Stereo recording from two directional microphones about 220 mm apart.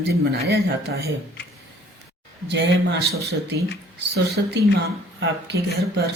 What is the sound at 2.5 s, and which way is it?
Speech, 50° right (ahead or behind).